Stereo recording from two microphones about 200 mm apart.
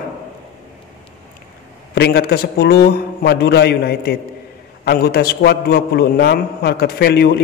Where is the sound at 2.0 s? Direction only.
50° left (ahead or behind).